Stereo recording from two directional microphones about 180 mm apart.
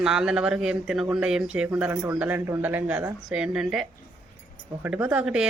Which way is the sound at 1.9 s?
15° right (ahead or behind).